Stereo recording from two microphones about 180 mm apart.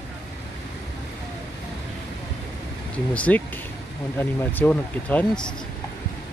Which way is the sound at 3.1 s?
5° left (ahead or behind).